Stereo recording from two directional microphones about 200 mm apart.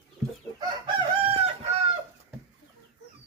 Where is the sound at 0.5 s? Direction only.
20° right (ahead or behind).